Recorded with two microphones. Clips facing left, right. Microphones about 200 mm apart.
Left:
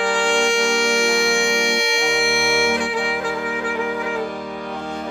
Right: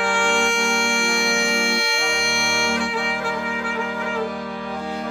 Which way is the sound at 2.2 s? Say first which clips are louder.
Left 6 dB; 5° left (ahead or behind).